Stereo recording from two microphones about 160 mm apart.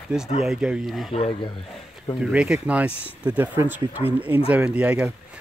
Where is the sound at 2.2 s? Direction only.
5° right (ahead or behind).